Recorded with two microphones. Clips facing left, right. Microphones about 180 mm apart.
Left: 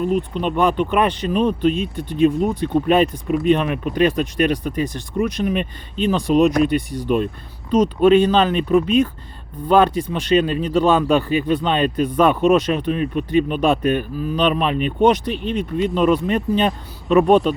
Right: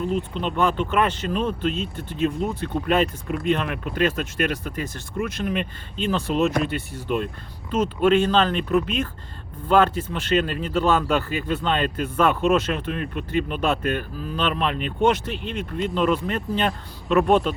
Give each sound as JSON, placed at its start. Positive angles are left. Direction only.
{"t": 0.0, "sound": "speech", "side_deg": 15}